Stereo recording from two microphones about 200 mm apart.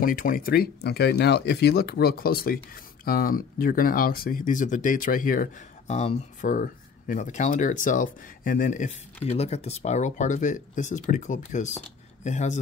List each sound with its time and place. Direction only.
0.0 s speech: 45° left (ahead or behind)